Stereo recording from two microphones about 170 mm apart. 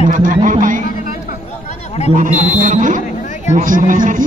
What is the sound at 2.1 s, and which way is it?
A man's voice, 45° right (ahead or behind).